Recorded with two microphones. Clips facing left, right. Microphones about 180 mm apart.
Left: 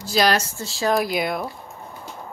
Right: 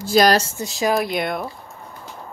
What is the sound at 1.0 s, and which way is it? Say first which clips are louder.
Speech: even; centre (ahead or behind).